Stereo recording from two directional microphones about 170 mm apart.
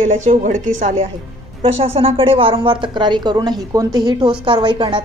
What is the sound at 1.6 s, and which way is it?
A woman's voice, 35° right (ahead or behind).